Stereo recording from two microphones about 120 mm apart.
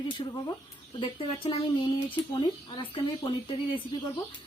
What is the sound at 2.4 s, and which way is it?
Speech, 40° left (ahead or behind).